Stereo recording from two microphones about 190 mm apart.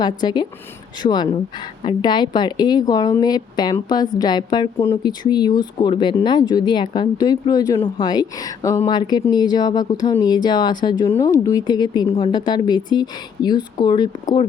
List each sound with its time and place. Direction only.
0.0 s a woman's voice: 20° left (ahead or behind)